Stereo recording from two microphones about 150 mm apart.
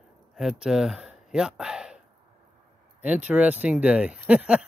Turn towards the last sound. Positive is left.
turn(degrees=-10)  # may be behind; listen again after turning